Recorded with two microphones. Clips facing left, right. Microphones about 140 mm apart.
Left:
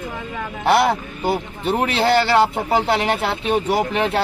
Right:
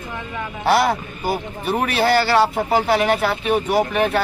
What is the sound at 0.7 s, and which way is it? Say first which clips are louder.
Speech: left 1 dB; 25° left (ahead or behind).